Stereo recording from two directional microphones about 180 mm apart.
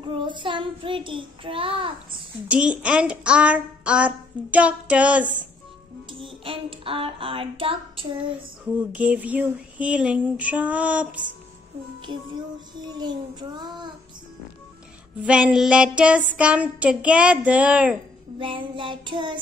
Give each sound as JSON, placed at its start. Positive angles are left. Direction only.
{"t": 0.0, "sound": "child singing", "side_deg": -25}
{"t": 2.4, "sound": "speech", "side_deg": -5}
{"t": 6.2, "sound": "child singing", "side_deg": -30}
{"t": 8.9, "sound": "speech", "side_deg": -10}
{"t": 12.8, "sound": "child singing", "side_deg": -25}
{"t": 15.2, "sound": "speech", "side_deg": -5}
{"t": 18.4, "sound": "child singing", "side_deg": -30}